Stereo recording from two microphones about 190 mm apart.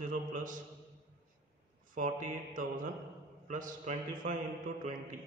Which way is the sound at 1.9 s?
45° right (ahead or behind).